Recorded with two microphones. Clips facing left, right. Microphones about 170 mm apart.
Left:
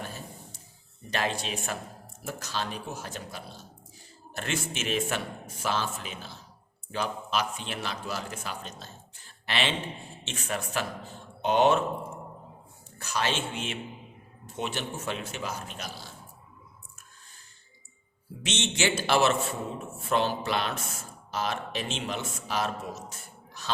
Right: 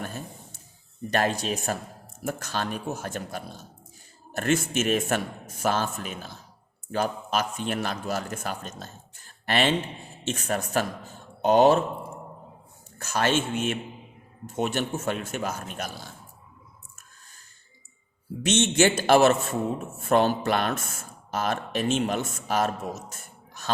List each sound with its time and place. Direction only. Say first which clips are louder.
1.1 s a man's voice: right 5 dB; 45° right (ahead or behind)
13.0 s a man's voice: right 5 dB; 50° right (ahead or behind)
18.4 s a man's voice: right 8 dB; 45° right (ahead or behind)